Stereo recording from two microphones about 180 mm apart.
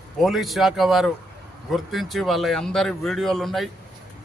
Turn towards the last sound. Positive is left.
turn(degrees=0)  # may be behind; listen again after turning